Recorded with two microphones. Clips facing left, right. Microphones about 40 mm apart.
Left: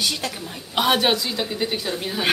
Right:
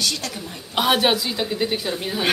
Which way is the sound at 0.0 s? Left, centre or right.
Centre.